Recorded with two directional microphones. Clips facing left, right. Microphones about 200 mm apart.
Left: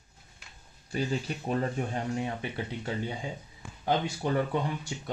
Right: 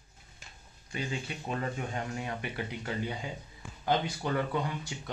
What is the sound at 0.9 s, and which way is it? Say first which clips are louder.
Speech: left 5 dB; 40° left (ahead or behind).